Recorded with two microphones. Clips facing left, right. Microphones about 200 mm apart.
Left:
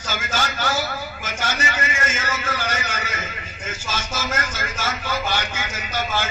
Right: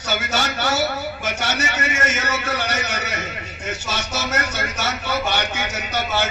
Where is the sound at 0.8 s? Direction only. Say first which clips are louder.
Right 4 dB; 65° right (ahead or behind).